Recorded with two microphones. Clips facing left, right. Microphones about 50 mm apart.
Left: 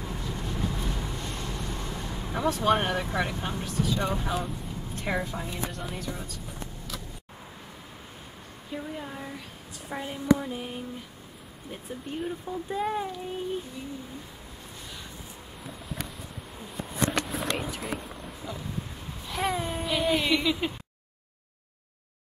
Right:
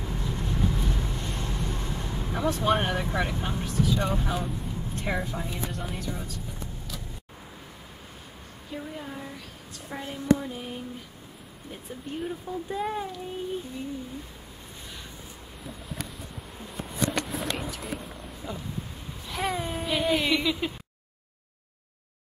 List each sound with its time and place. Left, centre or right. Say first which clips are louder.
0.0 s vehicle: right 2 dB; centre
1.1 s speech: right 1 dB; centre
8.7 s speech: left 1 dB; centre
15.6 s a sound: even; centre
19.2 s speech: left 1 dB; centre